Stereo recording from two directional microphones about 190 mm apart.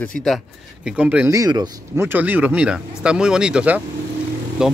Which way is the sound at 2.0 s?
10° right (ahead or behind).